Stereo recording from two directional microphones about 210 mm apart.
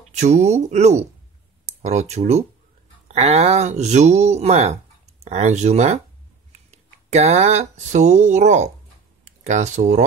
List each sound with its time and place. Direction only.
0.1 s speech: 35° right (ahead or behind)